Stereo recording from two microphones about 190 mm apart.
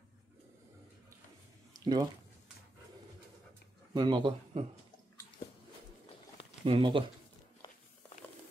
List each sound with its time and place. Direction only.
1.7 s a sound: 20° right (ahead or behind)
3.9 s a man's voice: 25° right (ahead or behind)
6.6 s a man's voice: 30° right (ahead or behind)